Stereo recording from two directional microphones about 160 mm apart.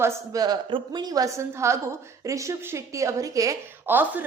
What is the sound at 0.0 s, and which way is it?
A woman's voice, 20° right (ahead or behind).